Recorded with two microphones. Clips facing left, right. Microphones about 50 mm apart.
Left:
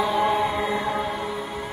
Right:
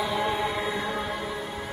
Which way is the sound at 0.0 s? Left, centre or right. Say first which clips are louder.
Left 5 dB; centre.